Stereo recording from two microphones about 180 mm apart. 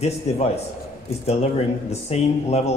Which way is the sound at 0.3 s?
35° left (ahead or behind).